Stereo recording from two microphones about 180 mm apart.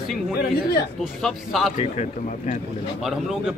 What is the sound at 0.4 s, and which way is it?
Speech, 60° left (ahead or behind).